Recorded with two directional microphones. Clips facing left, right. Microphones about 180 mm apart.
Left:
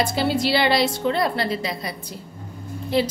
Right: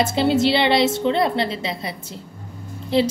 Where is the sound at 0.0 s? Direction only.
25° right (ahead or behind).